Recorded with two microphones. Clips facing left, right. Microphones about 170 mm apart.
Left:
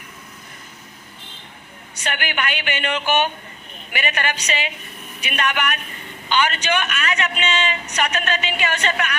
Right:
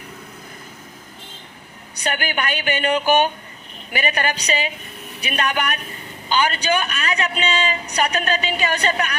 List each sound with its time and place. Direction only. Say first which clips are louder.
2.0 s a man's voice: right 2 dB; 40° right (ahead or behind)